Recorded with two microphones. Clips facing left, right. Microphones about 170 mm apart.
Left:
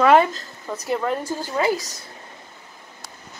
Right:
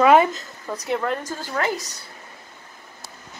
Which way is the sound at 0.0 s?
5° right (ahead or behind).